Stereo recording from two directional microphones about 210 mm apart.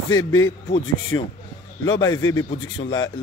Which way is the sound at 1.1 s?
20° left (ahead or behind).